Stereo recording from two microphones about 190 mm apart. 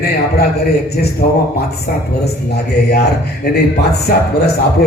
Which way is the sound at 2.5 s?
60° left (ahead or behind).